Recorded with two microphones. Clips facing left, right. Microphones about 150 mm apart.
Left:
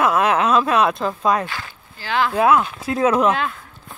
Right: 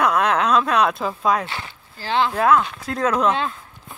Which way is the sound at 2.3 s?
10° left (ahead or behind).